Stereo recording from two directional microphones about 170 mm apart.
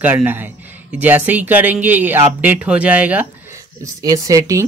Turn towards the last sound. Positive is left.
turn(degrees=-20)  # may be behind; listen again after turning